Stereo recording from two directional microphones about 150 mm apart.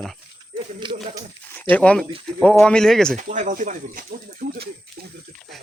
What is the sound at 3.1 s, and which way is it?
Speech, 60° right (ahead or behind).